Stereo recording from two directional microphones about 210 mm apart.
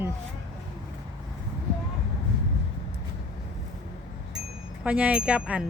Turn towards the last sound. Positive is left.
turn(degrees=-5)  # may be behind; listen again after turning